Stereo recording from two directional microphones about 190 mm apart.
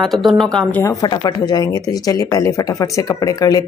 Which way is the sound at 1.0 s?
20° left (ahead or behind).